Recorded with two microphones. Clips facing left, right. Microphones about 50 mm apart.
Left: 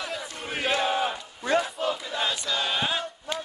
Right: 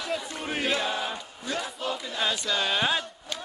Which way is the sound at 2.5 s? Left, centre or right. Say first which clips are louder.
Right 3 dB; centre.